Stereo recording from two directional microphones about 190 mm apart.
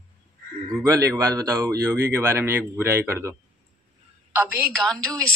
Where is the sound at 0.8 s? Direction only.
15° right (ahead or behind).